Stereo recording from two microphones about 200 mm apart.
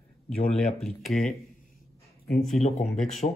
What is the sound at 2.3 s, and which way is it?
Speech, centre (ahead or behind).